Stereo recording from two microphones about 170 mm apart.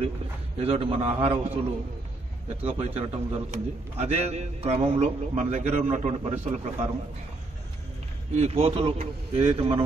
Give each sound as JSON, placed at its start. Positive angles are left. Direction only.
{"t": 0.6, "sound": "a man's voice", "side_deg": -35}
{"t": 2.6, "sound": "a man's voice", "side_deg": -40}
{"t": 8.4, "sound": "a man's voice", "side_deg": -35}